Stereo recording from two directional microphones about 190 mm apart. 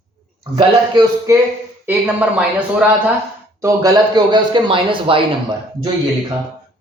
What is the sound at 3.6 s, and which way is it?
A man's voice, 20° right (ahead or behind).